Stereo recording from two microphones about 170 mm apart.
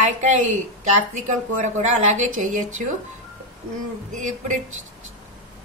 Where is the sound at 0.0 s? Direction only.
45° right (ahead or behind).